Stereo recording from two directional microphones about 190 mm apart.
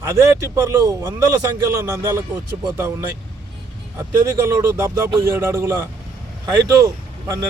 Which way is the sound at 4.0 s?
15° right (ahead or behind).